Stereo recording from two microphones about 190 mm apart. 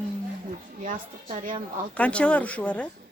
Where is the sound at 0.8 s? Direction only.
45° right (ahead or behind).